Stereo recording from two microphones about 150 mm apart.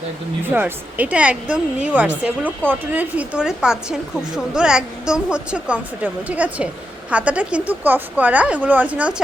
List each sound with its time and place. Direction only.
0.5 s speech: 10° right (ahead or behind)